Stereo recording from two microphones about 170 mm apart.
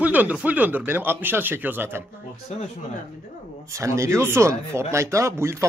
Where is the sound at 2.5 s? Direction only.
40° left (ahead or behind).